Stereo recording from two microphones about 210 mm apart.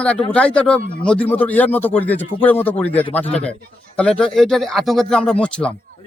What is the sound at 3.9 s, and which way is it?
Speech, 5° left (ahead or behind).